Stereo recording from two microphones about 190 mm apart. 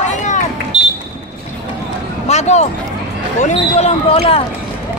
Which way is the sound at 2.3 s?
35° left (ahead or behind).